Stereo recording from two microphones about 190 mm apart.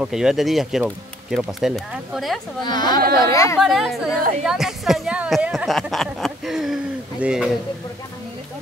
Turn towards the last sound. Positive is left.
turn(degrees=-5)  # may be behind; listen again after turning